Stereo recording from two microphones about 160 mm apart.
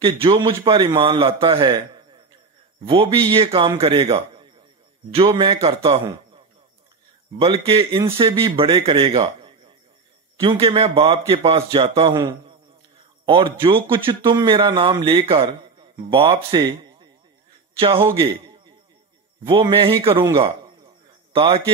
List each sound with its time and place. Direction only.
0.0 s a man's voice: 35° right (ahead or behind)
2.8 s a man's voice: 35° right (ahead or behind)
7.3 s a man's voice: 35° right (ahead or behind)
12.2 s a man's voice: 25° right (ahead or behind)
19.7 s a man's voice: 35° right (ahead or behind)
21.3 s a sound: 35° right (ahead or behind)